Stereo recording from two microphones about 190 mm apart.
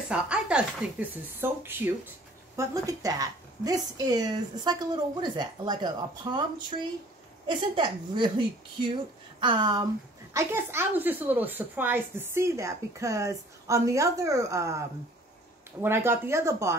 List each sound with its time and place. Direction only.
0.1 s a woman's voice: 5° right (ahead or behind); by 6.4 s 25° right (ahead or behind)
7.4 s a woman's voice: 25° right (ahead or behind)